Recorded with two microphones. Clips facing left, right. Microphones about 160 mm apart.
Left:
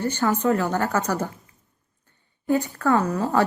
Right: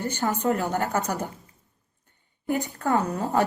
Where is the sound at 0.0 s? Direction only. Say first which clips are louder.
Left 3 dB; 15° right (ahead or behind).